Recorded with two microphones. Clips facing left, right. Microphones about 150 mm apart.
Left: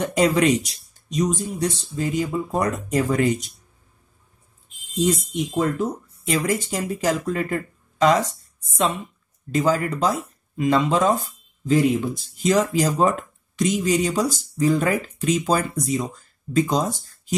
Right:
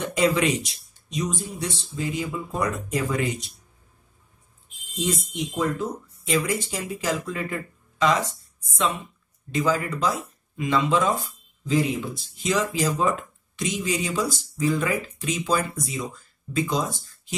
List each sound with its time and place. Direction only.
0.0 s speech: 40° left (ahead or behind)
5.6 s speech: 50° left (ahead or behind)
9.5 s speech: 45° left (ahead or behind)